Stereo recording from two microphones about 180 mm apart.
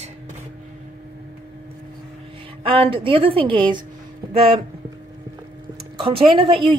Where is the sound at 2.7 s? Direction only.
30° right (ahead or behind).